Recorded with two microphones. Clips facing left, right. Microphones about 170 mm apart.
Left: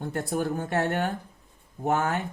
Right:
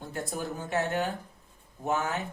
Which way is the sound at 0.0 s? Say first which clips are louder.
Left 6 dB; 55° left (ahead or behind).